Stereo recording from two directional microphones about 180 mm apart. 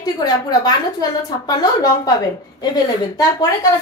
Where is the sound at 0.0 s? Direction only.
20° left (ahead or behind).